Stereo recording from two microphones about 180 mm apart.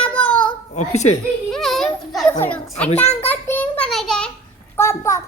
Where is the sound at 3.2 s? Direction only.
10° left (ahead or behind).